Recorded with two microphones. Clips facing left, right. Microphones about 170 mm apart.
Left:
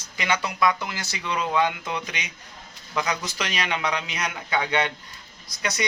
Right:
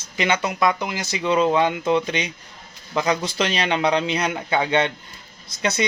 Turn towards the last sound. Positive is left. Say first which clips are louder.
# right 6 dB
turn(degrees=-25)  # may be behind; listen again after turning